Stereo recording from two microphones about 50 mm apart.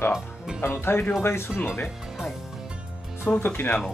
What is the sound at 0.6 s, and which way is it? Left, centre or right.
Speech, left.